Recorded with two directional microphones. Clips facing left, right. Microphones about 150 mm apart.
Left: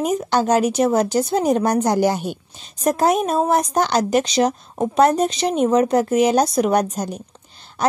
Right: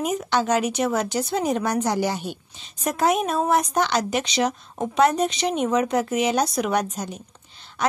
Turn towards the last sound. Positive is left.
turn(degrees=40)  # may be behind; listen again after turning